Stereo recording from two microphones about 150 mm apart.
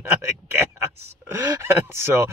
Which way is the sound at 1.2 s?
15° right (ahead or behind).